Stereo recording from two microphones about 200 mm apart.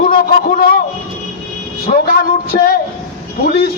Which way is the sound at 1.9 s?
45° left (ahead or behind).